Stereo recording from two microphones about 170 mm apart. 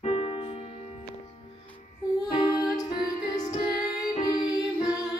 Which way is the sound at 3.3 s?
45° left (ahead or behind).